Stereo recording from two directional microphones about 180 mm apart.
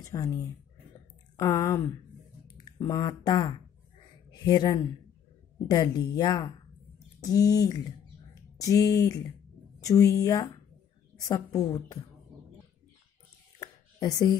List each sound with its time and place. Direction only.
0.0 s a woman's voice: 20° left (ahead or behind)
8.5 s speech: 20° left (ahead or behind)
13.6 s a sound: 20° left (ahead or behind)